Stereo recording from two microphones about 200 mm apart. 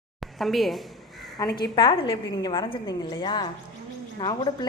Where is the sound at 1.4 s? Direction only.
20° left (ahead or behind).